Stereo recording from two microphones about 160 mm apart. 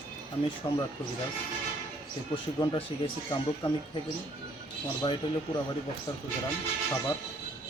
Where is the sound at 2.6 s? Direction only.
35° left (ahead or behind).